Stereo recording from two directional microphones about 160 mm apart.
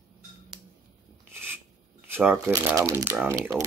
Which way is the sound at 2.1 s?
10° right (ahead or behind).